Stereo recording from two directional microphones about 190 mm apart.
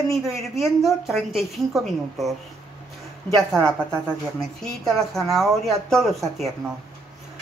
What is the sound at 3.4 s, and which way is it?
A woman's voice, 5° left (ahead or behind).